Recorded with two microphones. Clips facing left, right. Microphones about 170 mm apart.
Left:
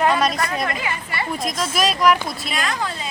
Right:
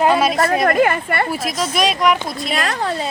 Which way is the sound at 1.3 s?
5° right (ahead or behind).